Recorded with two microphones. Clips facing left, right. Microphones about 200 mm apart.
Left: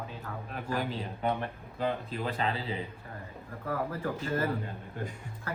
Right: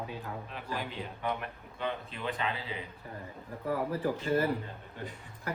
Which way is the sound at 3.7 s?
15° right (ahead or behind).